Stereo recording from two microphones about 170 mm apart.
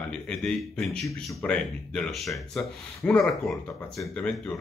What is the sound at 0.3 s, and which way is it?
Speech, 5° left (ahead or behind).